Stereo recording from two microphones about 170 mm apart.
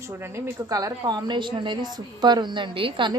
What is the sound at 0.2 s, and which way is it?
A woman's voice, 15° right (ahead or behind).